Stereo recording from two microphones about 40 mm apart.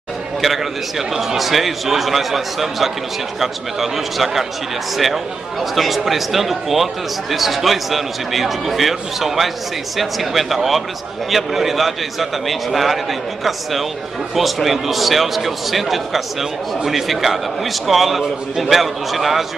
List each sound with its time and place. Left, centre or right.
0.4 s a man's voice: centre